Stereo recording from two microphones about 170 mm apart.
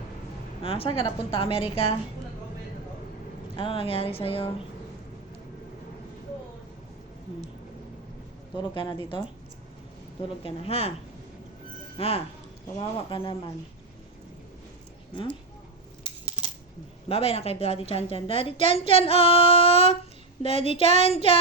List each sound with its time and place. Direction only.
0.6 s a woman's voice: 35° left (ahead or behind)
3.5 s a woman's voice: 30° left (ahead or behind)
8.5 s speech: 30° left (ahead or behind)
10.4 s a woman's voice: 35° left (ahead or behind)
11.9 s a woman's voice: 35° left (ahead or behind)
17.1 s a woman's voice: 35° left (ahead or behind)